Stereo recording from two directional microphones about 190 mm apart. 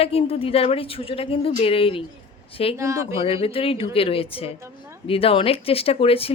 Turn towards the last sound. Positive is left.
turn(degrees=30)  # may be behind; listen again after turning